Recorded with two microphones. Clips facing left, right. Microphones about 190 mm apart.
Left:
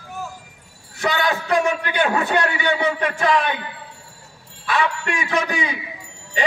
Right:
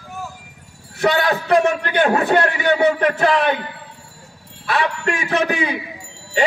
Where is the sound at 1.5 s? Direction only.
35° right (ahead or behind).